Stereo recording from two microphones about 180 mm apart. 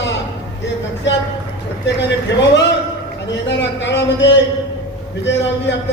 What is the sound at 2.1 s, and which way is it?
Speech, 75° left (ahead or behind).